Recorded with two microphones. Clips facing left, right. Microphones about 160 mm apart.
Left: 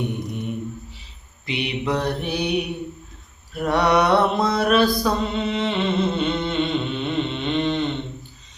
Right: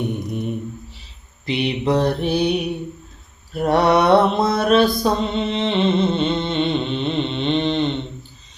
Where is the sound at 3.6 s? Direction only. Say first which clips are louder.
Right 3 dB; 35° right (ahead or behind).